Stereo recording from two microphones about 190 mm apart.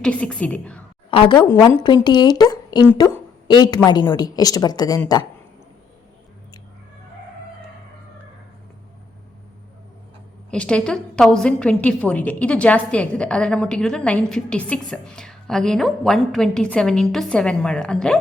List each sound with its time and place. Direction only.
0.0 s a woman's voice: 5° left (ahead or behind)
1.1 s a woman's voice: 25° left (ahead or behind)
10.5 s a woman's voice: 5° left (ahead or behind)